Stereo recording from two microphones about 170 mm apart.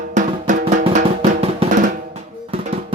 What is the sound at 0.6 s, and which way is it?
Music, 40° right (ahead or behind).